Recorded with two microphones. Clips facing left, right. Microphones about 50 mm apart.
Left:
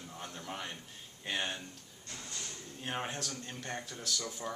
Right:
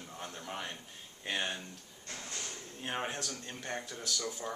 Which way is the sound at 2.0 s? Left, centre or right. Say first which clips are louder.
Right 2 dB; right.